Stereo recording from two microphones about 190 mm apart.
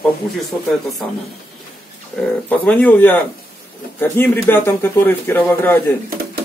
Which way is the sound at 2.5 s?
10° left (ahead or behind).